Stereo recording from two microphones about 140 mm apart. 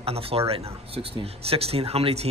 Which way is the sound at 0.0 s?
45° right (ahead or behind).